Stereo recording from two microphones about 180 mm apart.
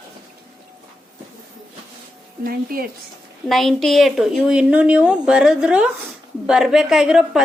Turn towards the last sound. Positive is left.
turn(degrees=-5)  # may be behind; listen again after turning